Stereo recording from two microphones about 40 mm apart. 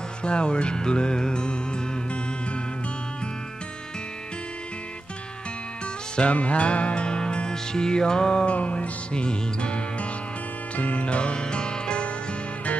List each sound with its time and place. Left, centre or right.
0.2 s music: left
6.1 s music: left